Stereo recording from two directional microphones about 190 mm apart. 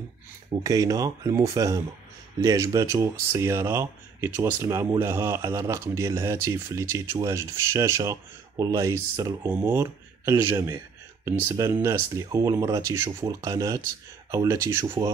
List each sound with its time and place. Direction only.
0.5 s speech: 20° right (ahead or behind)